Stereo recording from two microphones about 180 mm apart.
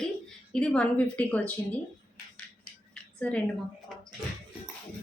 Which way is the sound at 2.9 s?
5° left (ahead or behind).